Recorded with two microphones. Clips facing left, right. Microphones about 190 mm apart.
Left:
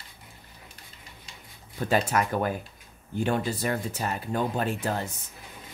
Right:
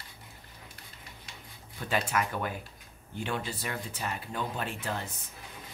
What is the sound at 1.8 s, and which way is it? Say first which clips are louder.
Speech: left 5 dB; 40° left (ahead or behind).